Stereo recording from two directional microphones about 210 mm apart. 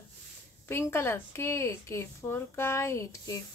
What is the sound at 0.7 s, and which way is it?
A woman's voice, 10° left (ahead or behind).